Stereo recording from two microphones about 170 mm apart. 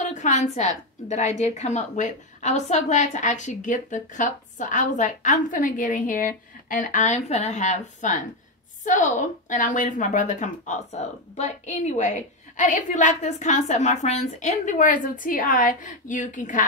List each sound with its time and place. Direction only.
0.0 s a woman's voice: 45° left (ahead or behind)